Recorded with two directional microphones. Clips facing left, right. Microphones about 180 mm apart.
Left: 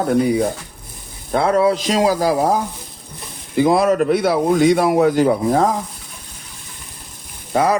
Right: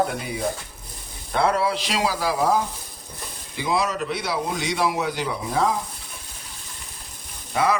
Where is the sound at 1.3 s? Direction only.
45° left (ahead or behind).